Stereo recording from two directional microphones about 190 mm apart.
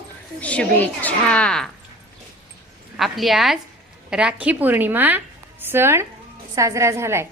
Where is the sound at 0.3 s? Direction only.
5° left (ahead or behind).